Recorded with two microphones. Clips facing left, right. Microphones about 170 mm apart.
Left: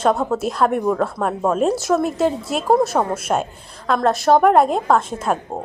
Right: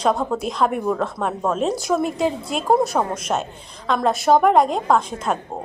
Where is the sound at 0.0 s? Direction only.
Centre (ahead or behind).